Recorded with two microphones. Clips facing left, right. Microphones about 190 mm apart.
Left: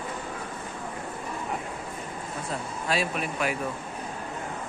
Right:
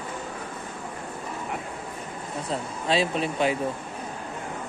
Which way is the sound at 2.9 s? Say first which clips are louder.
Right 4 dB; 25° right (ahead or behind).